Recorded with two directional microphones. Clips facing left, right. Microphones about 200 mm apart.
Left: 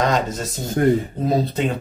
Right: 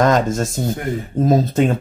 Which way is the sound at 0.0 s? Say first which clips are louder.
Right 5 dB; 45° right (ahead or behind).